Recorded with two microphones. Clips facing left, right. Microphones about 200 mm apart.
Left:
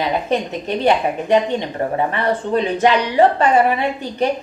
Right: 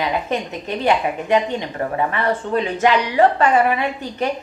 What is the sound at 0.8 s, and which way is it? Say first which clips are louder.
A woman's voice: left 2 dB; 30° left (ahead or behind).